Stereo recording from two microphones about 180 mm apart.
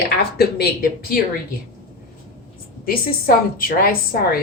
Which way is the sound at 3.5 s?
55° left (ahead or behind).